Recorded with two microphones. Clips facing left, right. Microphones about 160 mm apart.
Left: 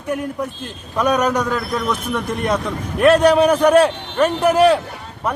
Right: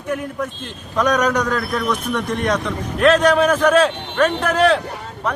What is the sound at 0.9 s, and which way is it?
Speech, 10° left (ahead or behind).